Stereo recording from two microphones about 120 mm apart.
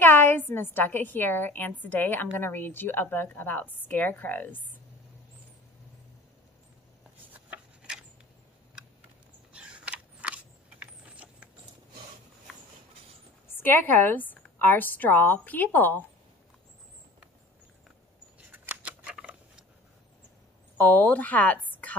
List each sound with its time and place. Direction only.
0.0 s a woman's voice: 15° left (ahead or behind)
7.3 s a sound: 10° right (ahead or behind)
9.6 s a sound: 10° right (ahead or behind)
13.6 s a woman's voice: 15° left (ahead or behind)
18.5 s scissors: 15° right (ahead or behind)
20.7 s a woman's voice: 15° left (ahead or behind)